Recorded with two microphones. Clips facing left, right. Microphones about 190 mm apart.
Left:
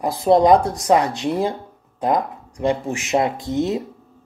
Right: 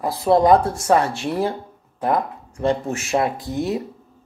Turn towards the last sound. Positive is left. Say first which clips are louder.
# left 2 dB
turn(degrees=20)  # may be behind; listen again after turning